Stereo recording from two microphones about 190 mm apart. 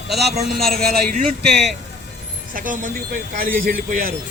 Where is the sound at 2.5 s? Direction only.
45° right (ahead or behind).